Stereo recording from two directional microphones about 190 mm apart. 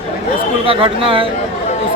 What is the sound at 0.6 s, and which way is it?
Speech, 30° right (ahead or behind).